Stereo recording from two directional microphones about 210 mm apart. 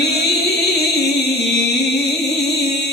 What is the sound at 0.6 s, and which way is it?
Music, 50° left (ahead or behind).